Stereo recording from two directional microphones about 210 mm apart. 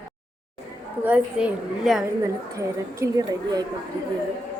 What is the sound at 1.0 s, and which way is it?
Speech, 5° right (ahead or behind).